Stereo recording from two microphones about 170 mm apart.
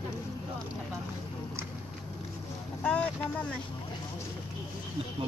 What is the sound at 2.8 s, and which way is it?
Speech, 5° left (ahead or behind).